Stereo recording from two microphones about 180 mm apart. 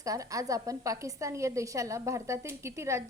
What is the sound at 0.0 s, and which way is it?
A woman's voice, 20° right (ahead or behind).